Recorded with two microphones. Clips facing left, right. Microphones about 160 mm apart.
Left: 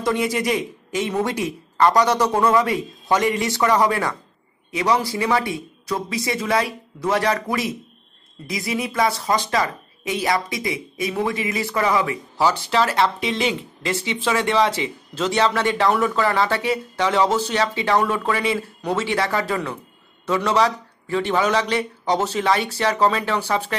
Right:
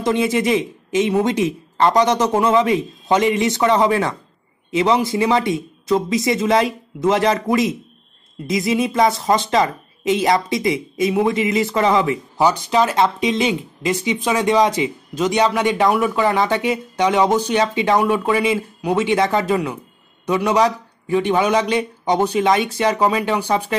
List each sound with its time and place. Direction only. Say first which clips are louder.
0.0 s a man's voice: right 4 dB; 25° right (ahead or behind)